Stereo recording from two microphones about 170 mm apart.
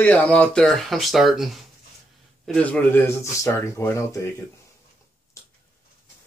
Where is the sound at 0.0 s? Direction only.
10° left (ahead or behind).